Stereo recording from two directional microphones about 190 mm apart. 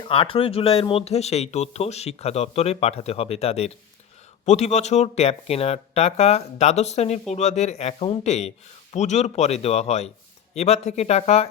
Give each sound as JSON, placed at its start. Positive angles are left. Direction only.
{"t": 0.0, "sound": "speech", "side_deg": 30}